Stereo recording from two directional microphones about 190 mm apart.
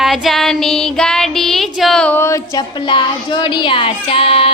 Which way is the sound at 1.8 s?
Centre (ahead or behind).